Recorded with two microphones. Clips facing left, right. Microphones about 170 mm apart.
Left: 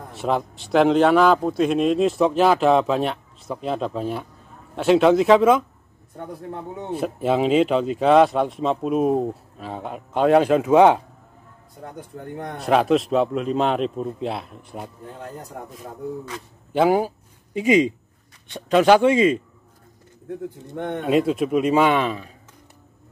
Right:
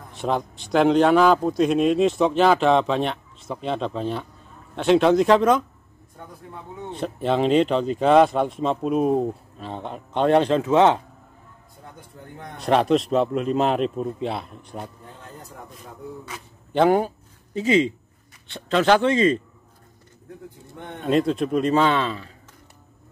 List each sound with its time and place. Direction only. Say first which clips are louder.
0.1 s a man's voice: left 1 dB; 5° left (ahead or behind)
6.9 s a man's voice: left 2 dB; 5° left (ahead or behind)
12.5 s a man's voice: left 1 dB; 5° left (ahead or behind)
15.5 s a man's voice: left 6 dB; 55° left (ahead or behind)
16.7 s a man's voice: even; 5° left (ahead or behind)
20.2 s speech: left 10 dB; 70° left (ahead or behind)
21.0 s a man's voice: left 1 dB; 5° left (ahead or behind)